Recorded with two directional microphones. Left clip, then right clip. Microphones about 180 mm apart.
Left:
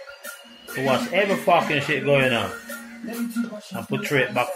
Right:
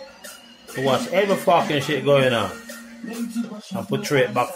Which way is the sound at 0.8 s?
25° right (ahead or behind).